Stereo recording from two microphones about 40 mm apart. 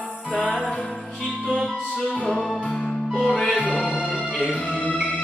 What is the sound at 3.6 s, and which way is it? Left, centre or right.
Music, left.